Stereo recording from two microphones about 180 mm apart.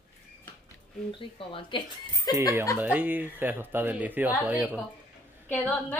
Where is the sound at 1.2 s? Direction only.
30° left (ahead or behind).